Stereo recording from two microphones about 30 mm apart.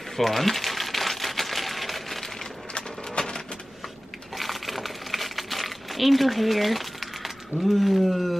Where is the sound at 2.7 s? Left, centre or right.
Left.